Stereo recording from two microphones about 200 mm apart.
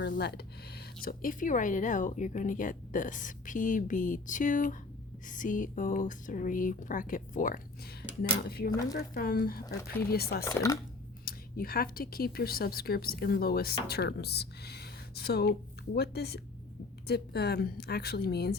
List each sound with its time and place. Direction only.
0.1 s a sound: 50° left (ahead or behind)
1.0 s speech: 45° left (ahead or behind)
8.7 s speech: 20° left (ahead or behind)
9.0 s speech: 45° left (ahead or behind)
10.4 s speech: 15° left (ahead or behind)
11.3 s speech: 50° left (ahead or behind)